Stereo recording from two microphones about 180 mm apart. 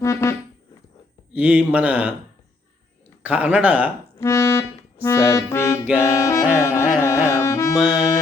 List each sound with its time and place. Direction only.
0.0 s a sound: 15° left (ahead or behind)
1.3 s speech: 5° right (ahead or behind)
3.2 s speech: 10° right (ahead or behind)
4.2 s accordion: 15° left (ahead or behind)
5.0 s music: 15° left (ahead or behind)